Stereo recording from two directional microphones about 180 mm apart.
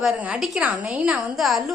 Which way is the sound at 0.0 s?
5° right (ahead or behind).